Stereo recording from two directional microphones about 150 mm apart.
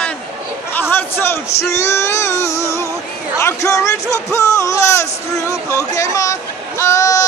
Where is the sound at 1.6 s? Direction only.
20° left (ahead or behind).